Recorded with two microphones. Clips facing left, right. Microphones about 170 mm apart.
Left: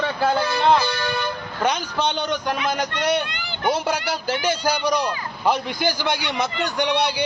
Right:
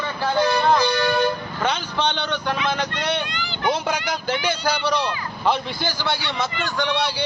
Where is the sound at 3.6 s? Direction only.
10° left (ahead or behind).